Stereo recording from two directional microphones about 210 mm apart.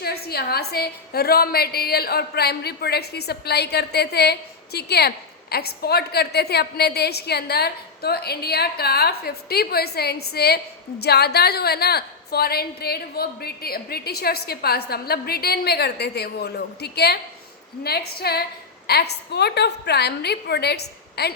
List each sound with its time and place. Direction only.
0.0 s a woman's voice: 50° left (ahead or behind)